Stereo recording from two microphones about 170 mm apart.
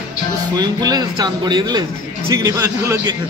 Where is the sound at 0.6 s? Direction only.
25° right (ahead or behind).